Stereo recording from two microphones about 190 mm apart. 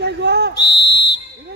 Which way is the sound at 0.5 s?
65° left (ahead or behind).